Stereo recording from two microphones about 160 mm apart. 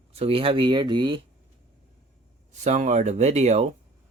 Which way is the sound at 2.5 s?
45° right (ahead or behind).